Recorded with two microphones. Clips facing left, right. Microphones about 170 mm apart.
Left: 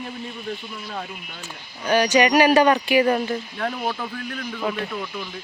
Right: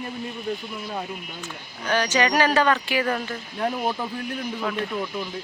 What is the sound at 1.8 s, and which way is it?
Speech, 15° left (ahead or behind).